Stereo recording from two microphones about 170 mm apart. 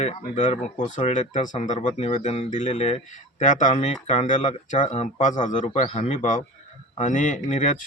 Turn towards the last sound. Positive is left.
turn(degrees=50)  # may be behind; listen again after turning